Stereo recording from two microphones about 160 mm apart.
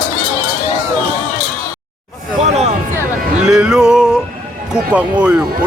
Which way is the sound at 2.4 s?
45° right (ahead or behind).